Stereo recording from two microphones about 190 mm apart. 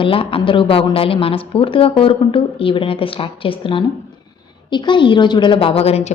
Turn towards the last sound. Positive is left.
turn(degrees=35)  # may be behind; listen again after turning